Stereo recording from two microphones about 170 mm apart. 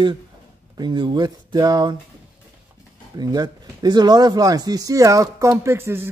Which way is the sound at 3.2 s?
25° right (ahead or behind).